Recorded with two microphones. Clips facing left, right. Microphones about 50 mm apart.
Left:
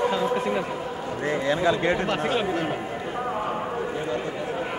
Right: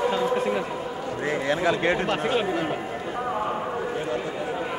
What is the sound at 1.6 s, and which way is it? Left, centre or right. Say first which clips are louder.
A man's voice: right 1 dB; centre.